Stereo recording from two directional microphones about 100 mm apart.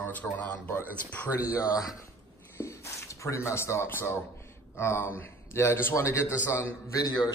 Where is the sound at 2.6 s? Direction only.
30° left (ahead or behind).